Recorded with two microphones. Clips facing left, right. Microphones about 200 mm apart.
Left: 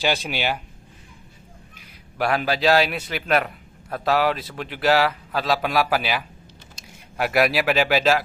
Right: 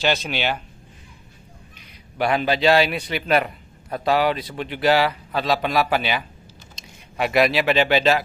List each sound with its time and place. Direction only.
0.0 s speech: 10° left (ahead or behind)
2.1 s a man's voice: centre (ahead or behind)